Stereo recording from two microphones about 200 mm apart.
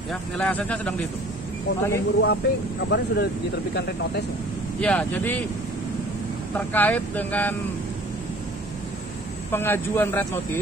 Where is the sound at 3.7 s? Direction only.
55° left (ahead or behind).